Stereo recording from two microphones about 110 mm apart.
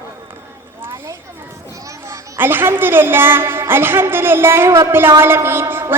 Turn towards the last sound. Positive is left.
turn(degrees=-20)  # may be behind; listen again after turning